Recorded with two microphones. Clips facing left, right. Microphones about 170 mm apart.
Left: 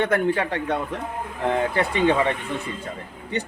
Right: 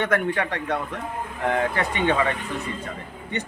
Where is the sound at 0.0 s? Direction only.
30° left (ahead or behind).